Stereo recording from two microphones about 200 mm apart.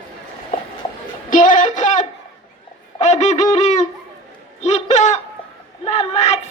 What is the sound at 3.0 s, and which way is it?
Goose, 35° left (ahead or behind).